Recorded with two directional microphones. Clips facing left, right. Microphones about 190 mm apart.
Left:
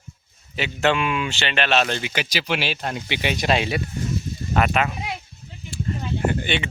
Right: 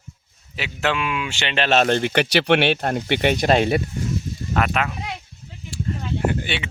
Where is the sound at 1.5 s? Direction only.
30° right (ahead or behind).